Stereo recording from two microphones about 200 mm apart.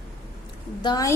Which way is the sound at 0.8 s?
20° left (ahead or behind).